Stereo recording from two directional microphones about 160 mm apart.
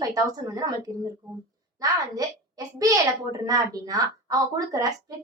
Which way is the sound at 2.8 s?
20° right (ahead or behind).